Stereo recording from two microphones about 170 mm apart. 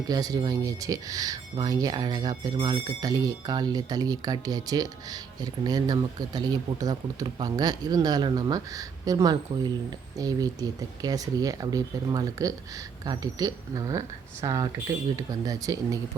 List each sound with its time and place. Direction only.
0.1 s speech: 25° right (ahead or behind)